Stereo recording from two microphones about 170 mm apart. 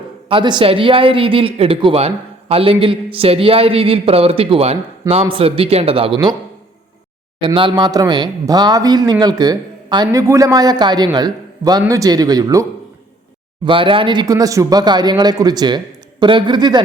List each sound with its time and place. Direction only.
0.3 s speech: 30° right (ahead or behind)
7.4 s speech: 30° right (ahead or behind)
13.7 s speech: 30° right (ahead or behind)